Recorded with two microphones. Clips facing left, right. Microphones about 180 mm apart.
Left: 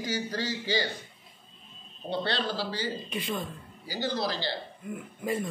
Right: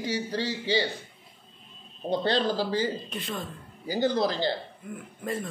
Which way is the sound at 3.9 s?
50° right (ahead or behind).